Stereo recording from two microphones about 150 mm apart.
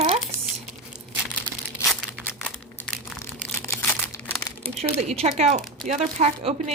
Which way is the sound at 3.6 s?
20° left (ahead or behind).